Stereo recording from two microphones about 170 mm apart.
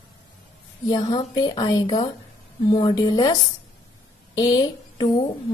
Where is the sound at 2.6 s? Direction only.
25° left (ahead or behind).